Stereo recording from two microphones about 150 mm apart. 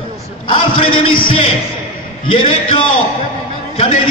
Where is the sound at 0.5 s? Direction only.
35° left (ahead or behind).